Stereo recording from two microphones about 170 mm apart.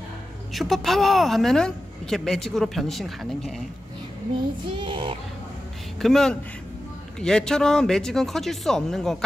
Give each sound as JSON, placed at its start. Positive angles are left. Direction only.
{"t": 0.5, "sound": "speech", "side_deg": 0}
{"t": 4.6, "sound": "child singing", "side_deg": -30}
{"t": 5.9, "sound": "speech", "side_deg": 0}